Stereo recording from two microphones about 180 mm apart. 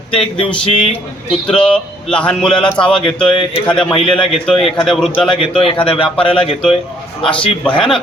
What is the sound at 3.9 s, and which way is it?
Speech, 30° left (ahead or behind).